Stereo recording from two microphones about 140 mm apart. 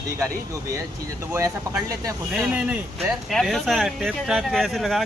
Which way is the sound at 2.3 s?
5° right (ahead or behind).